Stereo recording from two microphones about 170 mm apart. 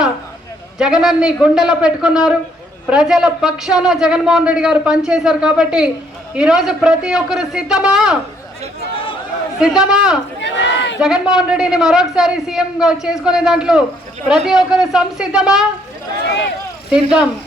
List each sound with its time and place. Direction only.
0.8 s speech: 5° right (ahead or behind)
9.6 s speech: 5° right (ahead or behind)
10.4 s crowd: 90° left
11.0 s speech: 5° right (ahead or behind)
16.9 s speech: 5° right (ahead or behind)